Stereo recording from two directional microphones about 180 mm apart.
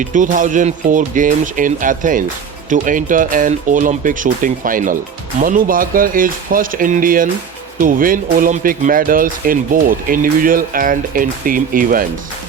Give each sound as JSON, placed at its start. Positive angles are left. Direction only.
{"t": 0.0, "sound": "speech", "side_deg": -45}